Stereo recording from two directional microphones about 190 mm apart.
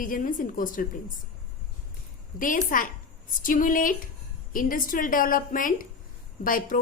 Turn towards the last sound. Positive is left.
turn(degrees=45)  # may be behind; listen again after turning